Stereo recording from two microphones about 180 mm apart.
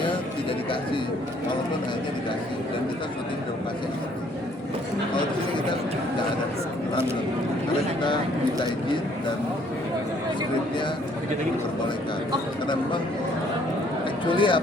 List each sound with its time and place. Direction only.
14.3 s a man's voice: 30° left (ahead or behind)